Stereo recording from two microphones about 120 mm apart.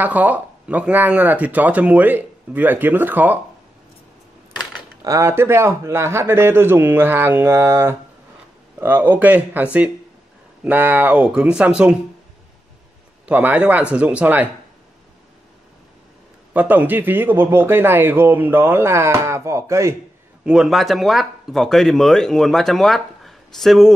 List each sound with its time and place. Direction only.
0.0 s speech: 15° right (ahead or behind)
5.0 s a man's voice: 25° right (ahead or behind); by 12.0 s 5° right (ahead or behind)
13.2 s speech: 10° right (ahead or behind)
16.5 s speech: 15° right (ahead or behind)
20.4 s speech: 5° right (ahead or behind)